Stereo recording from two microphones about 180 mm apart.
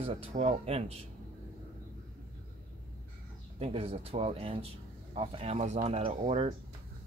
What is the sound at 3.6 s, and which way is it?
Speech, 30° right (ahead or behind).